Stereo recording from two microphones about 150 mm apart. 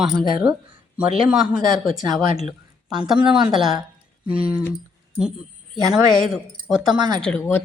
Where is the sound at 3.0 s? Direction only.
5° right (ahead or behind).